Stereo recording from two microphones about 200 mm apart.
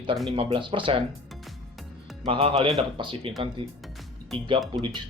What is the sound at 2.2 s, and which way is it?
Speech, 25° right (ahead or behind).